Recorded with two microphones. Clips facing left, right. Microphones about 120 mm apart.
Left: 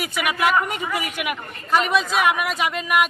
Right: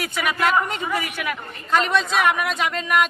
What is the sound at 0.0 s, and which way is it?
Speech, 10° left (ahead or behind).